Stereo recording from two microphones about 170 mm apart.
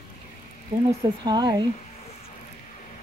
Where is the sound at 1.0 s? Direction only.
25° right (ahead or behind).